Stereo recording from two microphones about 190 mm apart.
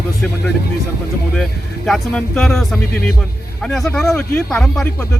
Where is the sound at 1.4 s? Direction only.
Centre (ahead or behind).